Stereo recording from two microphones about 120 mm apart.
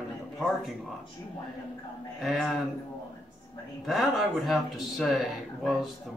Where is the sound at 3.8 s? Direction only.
Centre (ahead or behind).